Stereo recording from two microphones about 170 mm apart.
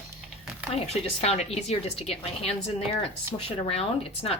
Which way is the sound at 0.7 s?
35° left (ahead or behind).